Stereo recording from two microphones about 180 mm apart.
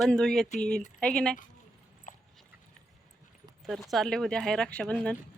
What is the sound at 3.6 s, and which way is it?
Speech, centre (ahead or behind).